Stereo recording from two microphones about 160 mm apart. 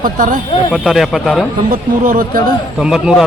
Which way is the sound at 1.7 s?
60° right (ahead or behind).